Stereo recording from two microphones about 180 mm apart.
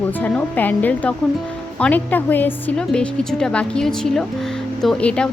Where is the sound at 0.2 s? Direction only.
10° left (ahead or behind).